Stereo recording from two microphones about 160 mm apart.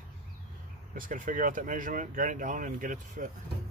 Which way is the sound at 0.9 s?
60° right (ahead or behind).